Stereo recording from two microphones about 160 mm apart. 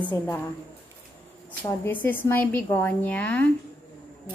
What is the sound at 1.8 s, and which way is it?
A woman's voice, 15° left (ahead or behind).